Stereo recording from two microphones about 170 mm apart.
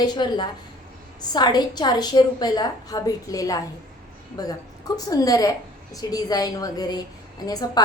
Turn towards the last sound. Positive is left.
turn(degrees=25)  # may be behind; listen again after turning